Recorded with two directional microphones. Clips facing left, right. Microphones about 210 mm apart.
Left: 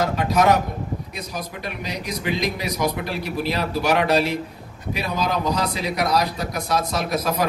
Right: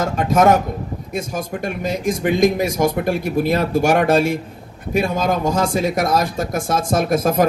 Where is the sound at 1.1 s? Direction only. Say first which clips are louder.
Right 7 dB; 50° right (ahead or behind).